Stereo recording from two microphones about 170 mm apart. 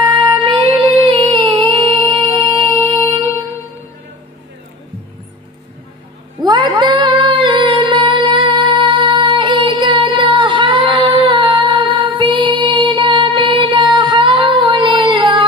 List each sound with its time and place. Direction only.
0.1 s music: 30° right (ahead or behind)
6.4 s female singing: 25° right (ahead or behind)